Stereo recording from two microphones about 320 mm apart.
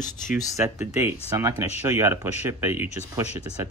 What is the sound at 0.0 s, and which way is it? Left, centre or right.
Speech, left.